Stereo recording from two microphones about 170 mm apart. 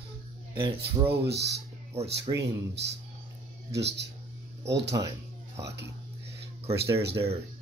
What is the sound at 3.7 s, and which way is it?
Speech, 85° right.